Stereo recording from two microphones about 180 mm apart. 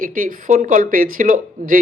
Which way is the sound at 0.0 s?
50° right (ahead or behind).